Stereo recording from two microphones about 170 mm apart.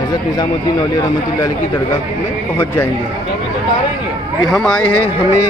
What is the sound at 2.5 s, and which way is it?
Speech, 15° left (ahead or behind).